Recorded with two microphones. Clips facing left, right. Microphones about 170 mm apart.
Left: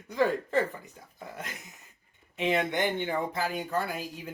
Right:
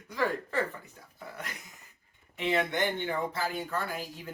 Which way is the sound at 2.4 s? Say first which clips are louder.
Left 2 dB; 15° left (ahead or behind).